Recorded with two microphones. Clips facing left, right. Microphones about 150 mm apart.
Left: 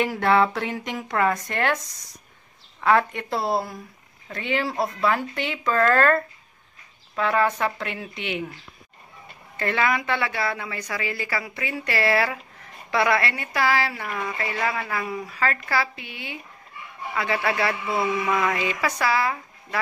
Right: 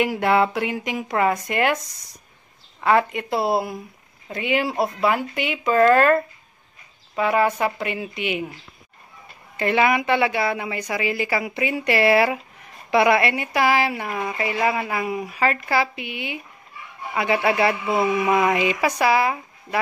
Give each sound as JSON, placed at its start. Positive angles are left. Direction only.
{"t": 0.0, "sound": "a woman's voice", "side_deg": -10}
{"t": 2.8, "sound": "a woman's voice", "side_deg": -5}
{"t": 9.6, "sound": "a woman's voice", "side_deg": -15}